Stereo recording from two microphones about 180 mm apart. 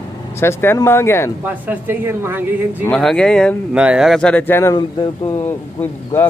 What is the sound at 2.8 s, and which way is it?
Speech, 5° left (ahead or behind).